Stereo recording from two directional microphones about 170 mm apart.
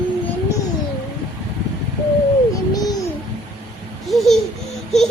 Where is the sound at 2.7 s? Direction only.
20° left (ahead or behind).